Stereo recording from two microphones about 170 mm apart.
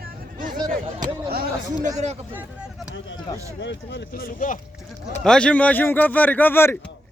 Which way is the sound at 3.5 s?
90° left.